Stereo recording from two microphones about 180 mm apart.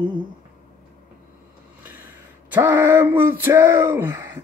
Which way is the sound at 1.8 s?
10° right (ahead or behind).